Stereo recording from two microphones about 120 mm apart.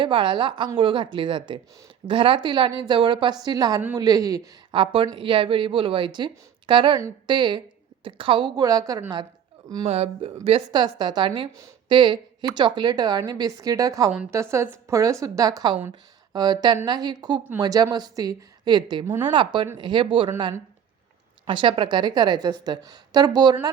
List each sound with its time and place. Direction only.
0.0 s a woman's voice: 45° right (ahead or behind)
4.7 s a woman's voice: 45° right (ahead or behind); by 9.0 s 30° right (ahead or behind)
9.8 s speech: 60° right (ahead or behind)
10.7 s a woman's voice: 35° right (ahead or behind)
21.4 s a woman's voice: 45° right (ahead or behind)